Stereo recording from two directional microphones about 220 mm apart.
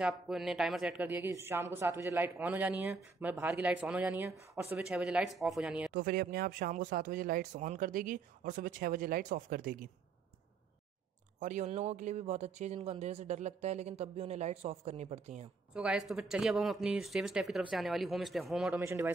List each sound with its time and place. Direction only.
0.0 s speech: centre (ahead or behind)
5.9 s speech: 40° right (ahead or behind)
11.3 s speech: 35° right (ahead or behind)
15.7 s speech: 5° right (ahead or behind)